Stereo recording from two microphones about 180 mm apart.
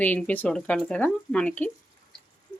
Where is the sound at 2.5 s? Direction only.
25° left (ahead or behind).